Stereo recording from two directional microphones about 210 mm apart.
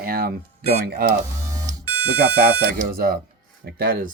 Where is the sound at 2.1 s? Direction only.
45° right (ahead or behind).